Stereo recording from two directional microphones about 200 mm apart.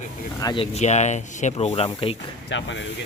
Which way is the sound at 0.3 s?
20° left (ahead or behind).